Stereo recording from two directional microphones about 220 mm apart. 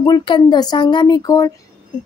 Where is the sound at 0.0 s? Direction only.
20° left (ahead or behind).